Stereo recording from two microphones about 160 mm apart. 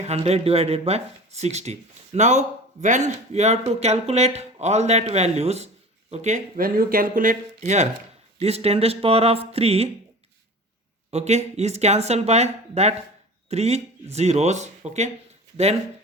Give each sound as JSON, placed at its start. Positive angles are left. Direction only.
{"t": 0.0, "sound": "speech", "side_deg": -40}
{"t": 11.1, "sound": "speech", "side_deg": -45}